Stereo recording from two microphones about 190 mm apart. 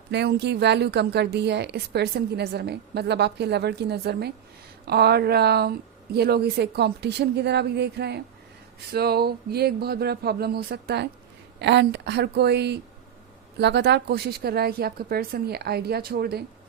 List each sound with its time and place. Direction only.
0.1 s a woman's voice: 65° right (ahead or behind)